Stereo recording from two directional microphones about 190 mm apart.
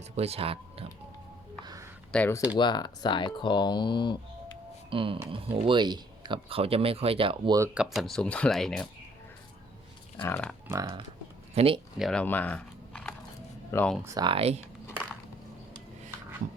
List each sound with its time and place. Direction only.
0.2 s speech: 30° right (ahead or behind)
1.6 s a sound: 20° right (ahead or behind)
2.1 s speech: 10° left (ahead or behind)
2.6 s speech: 20° left (ahead or behind)
4.9 s speech: 30° right (ahead or behind)
7.6 s speech: 5° right (ahead or behind)
10.2 s speech: 10° left (ahead or behind)
10.7 s speech: 20° right (ahead or behind)
11.9 s speech: centre (ahead or behind)
14.0 s speech: 20° right (ahead or behind)